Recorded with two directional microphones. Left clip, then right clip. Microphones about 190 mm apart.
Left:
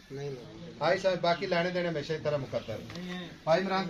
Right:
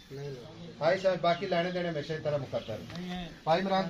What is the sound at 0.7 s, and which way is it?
A man's voice, 30° left (ahead or behind).